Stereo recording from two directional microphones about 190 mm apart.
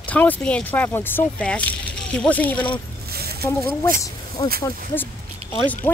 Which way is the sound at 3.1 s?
55° right (ahead or behind).